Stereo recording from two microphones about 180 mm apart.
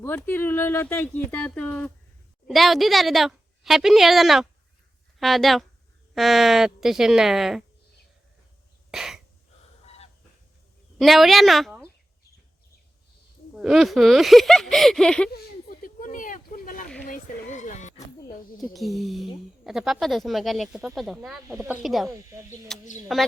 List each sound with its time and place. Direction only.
0.0 s speech: 10° left (ahead or behind)
8.9 s throat clearing: 5° right (ahead or behind)
10.9 s speech: centre (ahead or behind)
13.6 s speech: 5° right (ahead or behind)
15.3 s a sound: 55° left (ahead or behind)
18.6 s speech: centre (ahead or behind)
22.1 s speech: 15° right (ahead or behind)
23.1 s speech: centre (ahead or behind)